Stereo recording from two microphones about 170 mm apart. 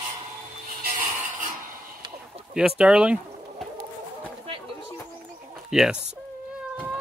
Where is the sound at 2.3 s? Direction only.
35° right (ahead or behind).